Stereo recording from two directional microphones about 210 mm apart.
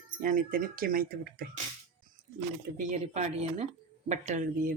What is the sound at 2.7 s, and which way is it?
Speech, 35° right (ahead or behind).